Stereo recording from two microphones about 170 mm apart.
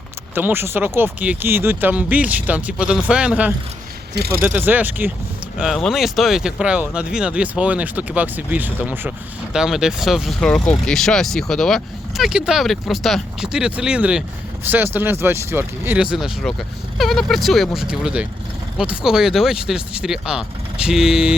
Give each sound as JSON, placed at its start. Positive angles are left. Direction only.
{"t": 0.3, "sound": "speech", "side_deg": -10}
{"t": 4.1, "sound": "speech", "side_deg": -70}
{"t": 4.4, "sound": "speech", "side_deg": -10}
{"t": 5.5, "sound": "speech", "side_deg": 0}